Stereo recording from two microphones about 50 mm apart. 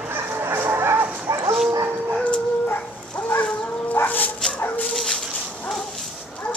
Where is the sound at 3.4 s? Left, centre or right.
Left.